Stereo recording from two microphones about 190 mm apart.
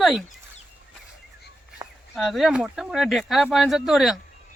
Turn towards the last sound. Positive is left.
turn(degrees=0)  # may be behind; listen again after turning